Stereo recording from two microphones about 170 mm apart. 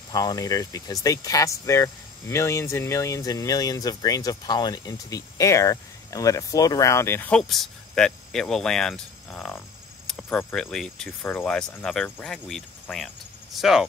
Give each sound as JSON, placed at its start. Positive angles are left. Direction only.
{"t": 0.1, "sound": "speech", "side_deg": 20}